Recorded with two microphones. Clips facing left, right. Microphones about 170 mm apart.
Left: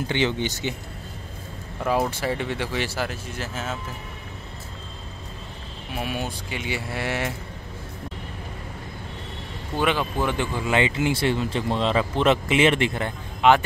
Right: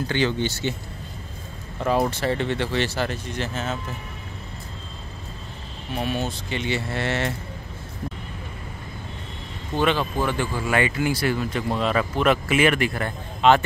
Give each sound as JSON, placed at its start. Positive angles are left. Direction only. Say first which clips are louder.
{"t": 0.0, "sound": "speech", "louder": "right 1 dB", "side_deg": 20}
{"t": 1.9, "sound": "speech", "louder": "right 2 dB", "side_deg": 10}
{"t": 5.9, "sound": "speech", "louder": "right 3 dB", "side_deg": 10}
{"t": 9.8, "sound": "speech", "louder": "right 1 dB", "side_deg": 15}